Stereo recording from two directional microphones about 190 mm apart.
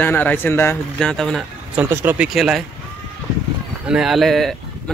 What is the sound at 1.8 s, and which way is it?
Speech, 10° right (ahead or behind).